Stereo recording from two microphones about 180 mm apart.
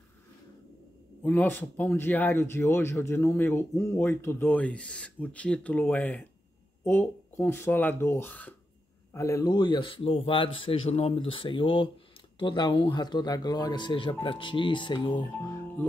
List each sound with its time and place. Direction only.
1.2 s speech: 10° left (ahead or behind); by 15.5 s 25° left (ahead or behind)
15.5 s speech: 10° left (ahead or behind)